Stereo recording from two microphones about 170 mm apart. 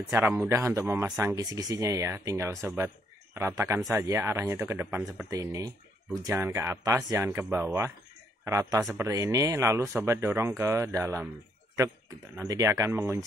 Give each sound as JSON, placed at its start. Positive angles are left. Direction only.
{"t": 0.1, "sound": "speech", "side_deg": -10}
{"t": 12.4, "sound": "speech", "side_deg": -15}